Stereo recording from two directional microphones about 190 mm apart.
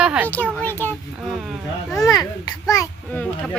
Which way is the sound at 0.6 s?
10° left (ahead or behind).